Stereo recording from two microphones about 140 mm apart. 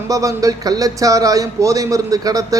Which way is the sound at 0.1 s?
25° right (ahead or behind).